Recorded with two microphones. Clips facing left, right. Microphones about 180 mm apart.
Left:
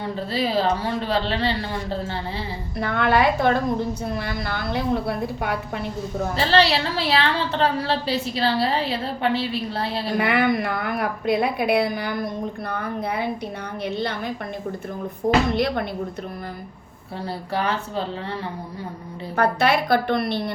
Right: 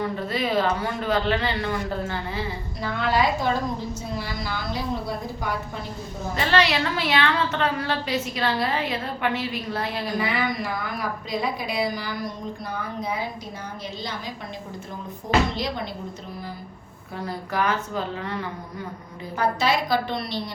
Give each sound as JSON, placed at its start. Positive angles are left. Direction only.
{"t": 0.0, "sound": "a woman's voice", "side_deg": 30}
{"t": 2.7, "sound": "a woman's voice", "side_deg": 60}
{"t": 6.3, "sound": "a woman's voice", "side_deg": 30}
{"t": 10.2, "sound": "a woman's voice", "side_deg": 60}
{"t": 15.5, "sound": "a woman's voice", "side_deg": 60}
{"t": 17.2, "sound": "a woman's voice", "side_deg": 30}
{"t": 19.4, "sound": "a woman's voice", "side_deg": 60}